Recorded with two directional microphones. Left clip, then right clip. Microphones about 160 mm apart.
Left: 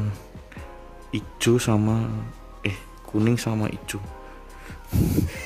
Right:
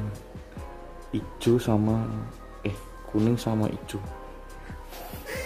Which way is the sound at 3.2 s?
20° left (ahead or behind).